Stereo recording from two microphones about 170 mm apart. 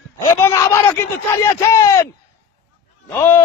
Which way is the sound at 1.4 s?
15° left (ahead or behind).